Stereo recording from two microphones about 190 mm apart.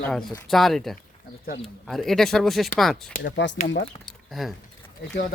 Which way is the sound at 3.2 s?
70° left (ahead or behind).